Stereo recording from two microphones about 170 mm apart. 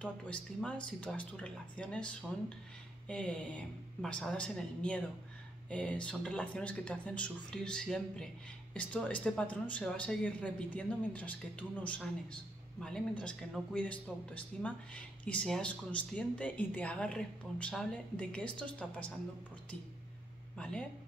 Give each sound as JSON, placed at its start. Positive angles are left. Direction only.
{"t": 0.0, "sound": "speech", "side_deg": 5}
{"t": 20.5, "sound": "speech", "side_deg": 5}